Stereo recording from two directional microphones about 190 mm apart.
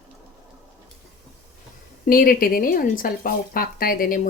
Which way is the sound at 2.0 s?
50° left (ahead or behind).